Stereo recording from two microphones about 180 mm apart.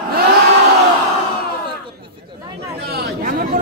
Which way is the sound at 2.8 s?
65° right (ahead or behind).